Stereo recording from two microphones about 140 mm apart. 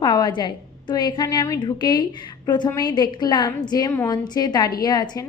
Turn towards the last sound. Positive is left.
turn(degrees=30)  # may be behind; listen again after turning